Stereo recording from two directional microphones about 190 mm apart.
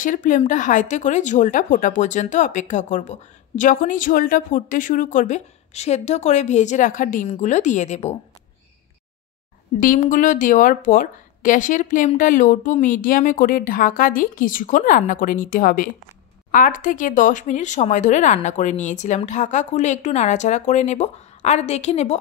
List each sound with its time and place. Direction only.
0.0 s speech: 45° left (ahead or behind)
9.8 s speech: 45° left (ahead or behind)